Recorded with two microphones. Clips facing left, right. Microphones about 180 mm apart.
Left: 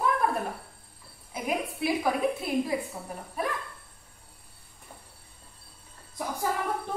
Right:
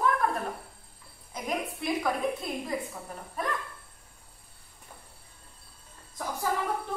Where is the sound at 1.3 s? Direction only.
5° left (ahead or behind).